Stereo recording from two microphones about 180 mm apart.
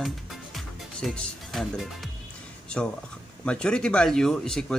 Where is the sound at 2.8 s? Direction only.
5° left (ahead or behind).